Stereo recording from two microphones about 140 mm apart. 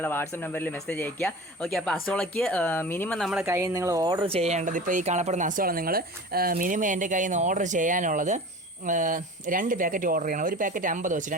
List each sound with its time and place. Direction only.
0.0 s speech: 15° left (ahead or behind)
3.2 s speech: centre (ahead or behind)
3.4 s speech: 20° right (ahead or behind); by 11.3 s 65° right (ahead or behind)